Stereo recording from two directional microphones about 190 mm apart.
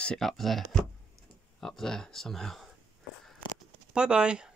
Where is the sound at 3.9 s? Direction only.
5° right (ahead or behind).